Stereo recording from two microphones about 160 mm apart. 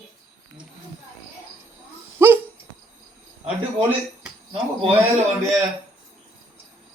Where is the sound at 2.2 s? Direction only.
15° right (ahead or behind).